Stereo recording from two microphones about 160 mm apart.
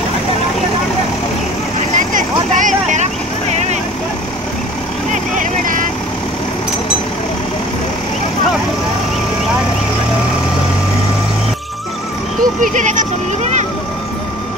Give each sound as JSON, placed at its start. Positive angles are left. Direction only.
{"t": 2.0, "sound": "vehicle", "side_deg": -55}
{"t": 5.4, "sound": "vehicle", "side_deg": -55}
{"t": 12.7, "sound": "vehicle", "side_deg": -50}